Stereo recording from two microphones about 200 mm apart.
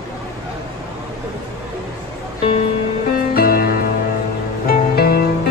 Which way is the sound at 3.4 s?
50° left (ahead or behind).